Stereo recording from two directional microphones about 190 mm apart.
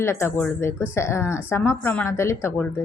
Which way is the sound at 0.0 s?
15° left (ahead or behind).